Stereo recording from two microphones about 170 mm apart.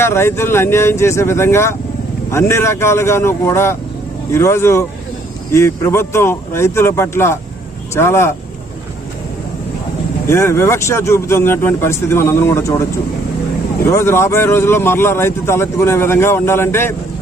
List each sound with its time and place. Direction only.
0.0 s speech: 15° left (ahead or behind)
10.2 s speech: 15° left (ahead or behind)
13.8 s speech: 15° left (ahead or behind)